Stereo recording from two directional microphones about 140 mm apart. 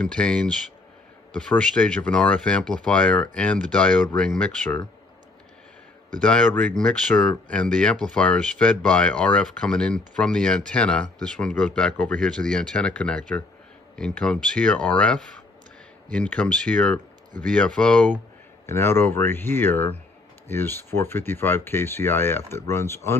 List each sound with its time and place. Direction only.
0.1 s speech: 5° left (ahead or behind)
6.2 s speech: 10° left (ahead or behind)
18.7 s speech: 15° left (ahead or behind)